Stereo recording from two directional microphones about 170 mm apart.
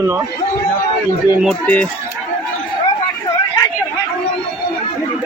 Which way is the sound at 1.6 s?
10° left (ahead or behind).